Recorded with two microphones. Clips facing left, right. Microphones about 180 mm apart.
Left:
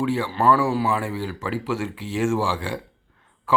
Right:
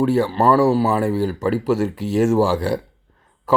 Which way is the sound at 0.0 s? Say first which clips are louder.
Right 5 dB; 40° right (ahead or behind).